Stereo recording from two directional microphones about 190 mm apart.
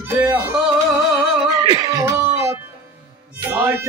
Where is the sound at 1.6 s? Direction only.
25° right (ahead or behind).